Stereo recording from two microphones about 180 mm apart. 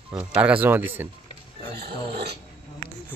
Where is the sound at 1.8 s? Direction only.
65° right (ahead or behind).